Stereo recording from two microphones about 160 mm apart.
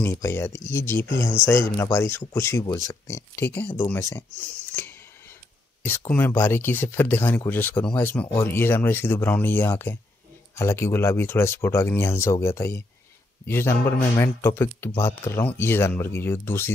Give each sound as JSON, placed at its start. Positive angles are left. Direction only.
{"t": 0.0, "sound": "speech", "side_deg": 15}